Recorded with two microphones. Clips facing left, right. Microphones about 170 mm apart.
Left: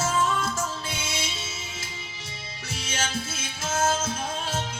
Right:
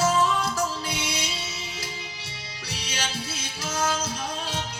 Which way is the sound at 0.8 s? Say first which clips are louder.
Right 3 dB; 25° left (ahead or behind).